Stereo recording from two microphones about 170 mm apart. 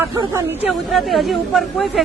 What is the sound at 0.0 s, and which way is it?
Speech, 20° right (ahead or behind).